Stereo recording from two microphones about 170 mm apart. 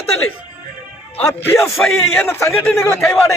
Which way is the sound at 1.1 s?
10° left (ahead or behind).